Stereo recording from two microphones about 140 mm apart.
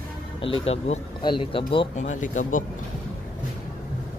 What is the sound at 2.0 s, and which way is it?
Speech, 60° left (ahead or behind).